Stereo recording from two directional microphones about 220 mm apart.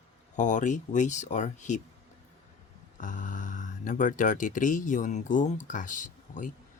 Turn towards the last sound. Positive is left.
turn(degrees=35)  # may be behind; listen again after turning